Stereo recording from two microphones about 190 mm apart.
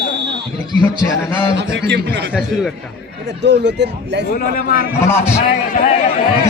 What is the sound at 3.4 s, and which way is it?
Speech, 65° right (ahead or behind).